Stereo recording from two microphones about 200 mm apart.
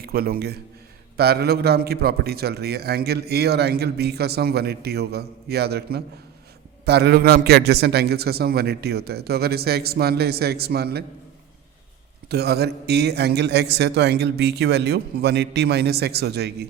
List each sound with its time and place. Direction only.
0.0 s a man's voice: 50° right (ahead or behind)
12.3 s a man's voice: 55° right (ahead or behind)